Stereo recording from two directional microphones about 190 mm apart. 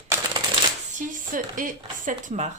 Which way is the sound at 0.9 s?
45° right (ahead or behind).